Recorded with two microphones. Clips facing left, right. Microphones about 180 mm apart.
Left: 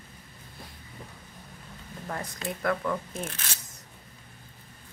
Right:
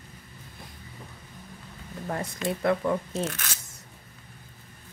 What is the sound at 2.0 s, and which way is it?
Speech, 25° right (ahead or behind).